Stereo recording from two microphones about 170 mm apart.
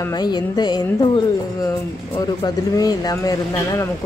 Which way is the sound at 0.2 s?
25° left (ahead or behind).